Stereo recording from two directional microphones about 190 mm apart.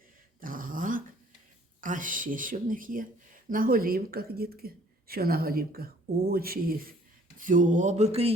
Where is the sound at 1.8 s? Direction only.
45° right (ahead or behind).